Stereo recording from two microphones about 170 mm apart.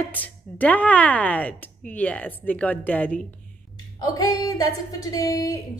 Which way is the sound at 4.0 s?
20° left (ahead or behind).